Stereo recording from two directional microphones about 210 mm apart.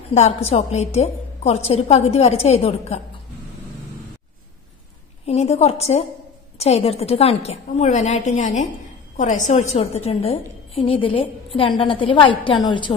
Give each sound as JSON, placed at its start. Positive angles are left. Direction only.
{"t": 0.1, "sound": "a woman's voice", "side_deg": 30}
{"t": 5.2, "sound": "a woman's voice", "side_deg": 30}